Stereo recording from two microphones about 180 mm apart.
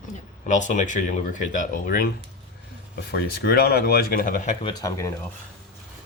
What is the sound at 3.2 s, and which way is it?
Speech, 60° left (ahead or behind).